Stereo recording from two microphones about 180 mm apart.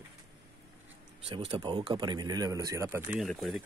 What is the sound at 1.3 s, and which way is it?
A man's voice, 30° right (ahead or behind).